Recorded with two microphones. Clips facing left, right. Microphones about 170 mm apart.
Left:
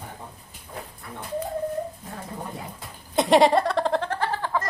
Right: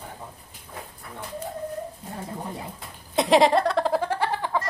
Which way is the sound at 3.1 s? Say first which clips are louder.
Left 1 dB; centre (ahead or behind).